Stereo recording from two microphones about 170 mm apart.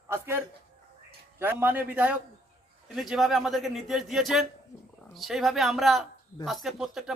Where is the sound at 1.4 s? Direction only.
10° right (ahead or behind).